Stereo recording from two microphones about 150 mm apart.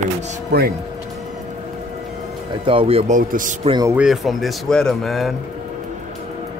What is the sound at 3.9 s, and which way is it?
Speech, 5° right (ahead or behind).